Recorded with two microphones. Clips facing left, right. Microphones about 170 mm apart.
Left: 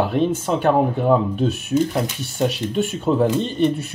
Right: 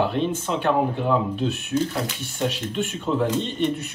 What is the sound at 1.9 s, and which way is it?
Speech, 40° left (ahead or behind).